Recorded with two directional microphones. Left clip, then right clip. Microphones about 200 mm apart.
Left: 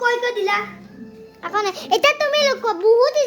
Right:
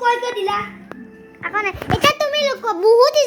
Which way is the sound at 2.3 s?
20° left (ahead or behind).